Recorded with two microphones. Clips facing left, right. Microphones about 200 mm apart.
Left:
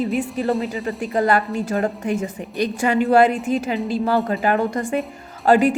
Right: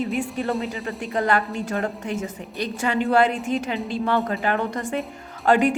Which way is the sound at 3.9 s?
35° left (ahead or behind).